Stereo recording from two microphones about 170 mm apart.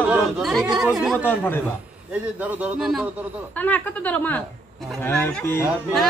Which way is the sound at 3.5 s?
10° left (ahead or behind).